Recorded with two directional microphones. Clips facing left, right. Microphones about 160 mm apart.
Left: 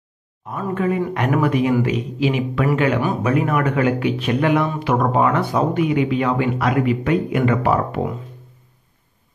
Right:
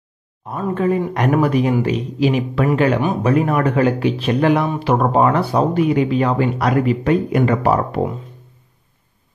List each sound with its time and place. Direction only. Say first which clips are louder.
0.5 s speech: right 3 dB; 35° right (ahead or behind)